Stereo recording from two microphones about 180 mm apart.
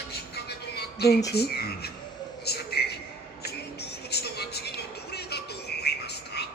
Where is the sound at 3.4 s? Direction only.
65° left (ahead or behind).